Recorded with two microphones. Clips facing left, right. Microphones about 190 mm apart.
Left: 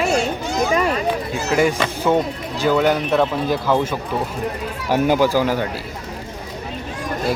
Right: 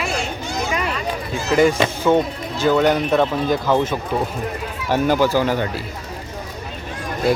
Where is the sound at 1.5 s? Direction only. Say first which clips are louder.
Right 3 dB; 10° left (ahead or behind).